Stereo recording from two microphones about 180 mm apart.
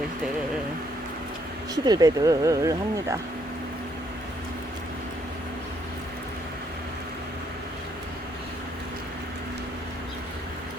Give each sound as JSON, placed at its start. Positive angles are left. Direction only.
{"t": 1.7, "sound": "speech", "side_deg": -20}